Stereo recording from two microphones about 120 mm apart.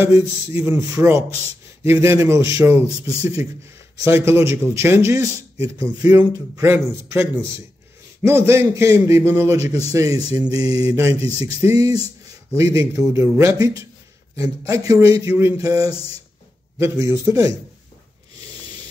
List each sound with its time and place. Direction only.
0.0 s a man's voice: 20° right (ahead or behind)